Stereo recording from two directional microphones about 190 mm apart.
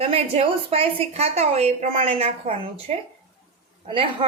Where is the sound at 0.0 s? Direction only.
30° right (ahead or behind).